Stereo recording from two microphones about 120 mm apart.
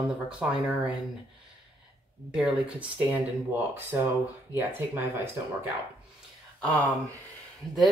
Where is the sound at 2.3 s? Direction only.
5° right (ahead or behind).